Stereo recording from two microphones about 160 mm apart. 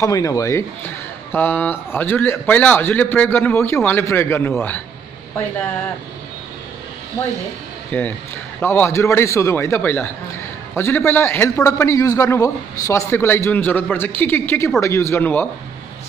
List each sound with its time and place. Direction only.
0.0 s a man's voice: 20° left (ahead or behind)
7.9 s a man's voice: 10° left (ahead or behind)